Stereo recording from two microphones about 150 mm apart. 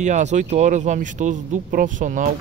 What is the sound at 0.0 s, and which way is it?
Speech, 50° right (ahead or behind).